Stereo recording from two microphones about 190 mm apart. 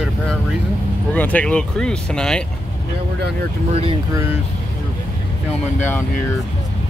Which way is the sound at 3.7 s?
30° right (ahead or behind).